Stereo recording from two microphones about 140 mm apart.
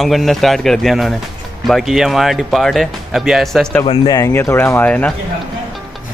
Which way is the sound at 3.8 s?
40° left (ahead or behind).